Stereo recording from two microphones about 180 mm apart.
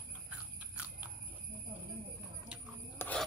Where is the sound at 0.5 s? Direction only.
5° right (ahead or behind).